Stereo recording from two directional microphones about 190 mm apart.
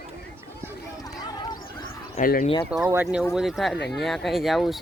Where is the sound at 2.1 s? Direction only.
50° left (ahead or behind).